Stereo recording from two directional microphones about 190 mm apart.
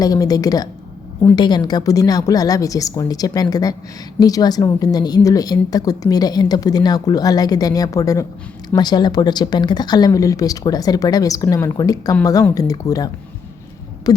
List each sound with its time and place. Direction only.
0.0 s a woman's voice: 20° left (ahead or behind)